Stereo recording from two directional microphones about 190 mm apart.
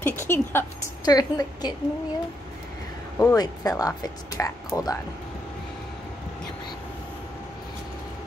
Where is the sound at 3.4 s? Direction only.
20° left (ahead or behind).